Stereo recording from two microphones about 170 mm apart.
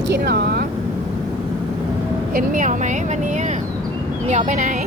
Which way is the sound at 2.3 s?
50° right (ahead or behind).